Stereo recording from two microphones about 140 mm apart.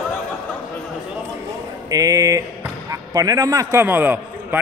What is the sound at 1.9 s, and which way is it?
A man's voice, 25° right (ahead or behind).